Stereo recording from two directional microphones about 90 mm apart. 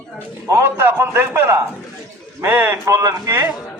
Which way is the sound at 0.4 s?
30° right (ahead or behind).